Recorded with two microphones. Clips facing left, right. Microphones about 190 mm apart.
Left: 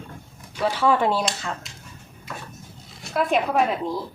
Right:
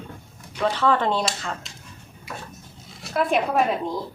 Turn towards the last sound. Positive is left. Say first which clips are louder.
# even
turn(degrees=0)  # may be behind; listen again after turning